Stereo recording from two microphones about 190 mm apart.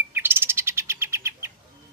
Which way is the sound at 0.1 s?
10° right (ahead or behind).